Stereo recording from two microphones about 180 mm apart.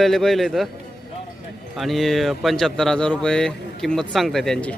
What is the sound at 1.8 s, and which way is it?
Speech, centre (ahead or behind).